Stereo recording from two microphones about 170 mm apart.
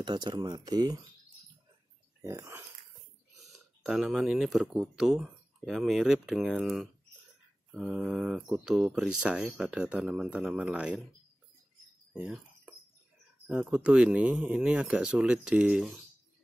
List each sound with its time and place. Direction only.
0.0 s speech: 25° right (ahead or behind)
2.2 s speech: 15° right (ahead or behind)
3.3 s speech: centre (ahead or behind)
12.1 s a sound: 10° right (ahead or behind)
13.5 s speech: 5° right (ahead or behind)